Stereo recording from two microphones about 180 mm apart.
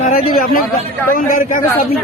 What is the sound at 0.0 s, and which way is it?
Chatter, 50° left (ahead or behind).